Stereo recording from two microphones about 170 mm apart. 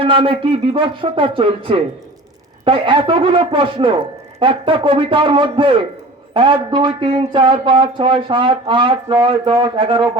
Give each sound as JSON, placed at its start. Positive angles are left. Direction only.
{"t": 0.0, "sound": "a man's voice", "side_deg": -30}